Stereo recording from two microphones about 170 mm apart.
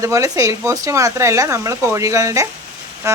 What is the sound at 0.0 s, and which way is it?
Speech, 20° right (ahead or behind).